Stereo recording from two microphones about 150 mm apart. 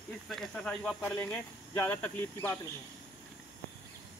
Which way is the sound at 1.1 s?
20° left (ahead or behind).